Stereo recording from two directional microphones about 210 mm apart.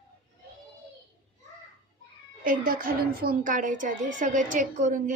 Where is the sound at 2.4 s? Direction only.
45° right (ahead or behind).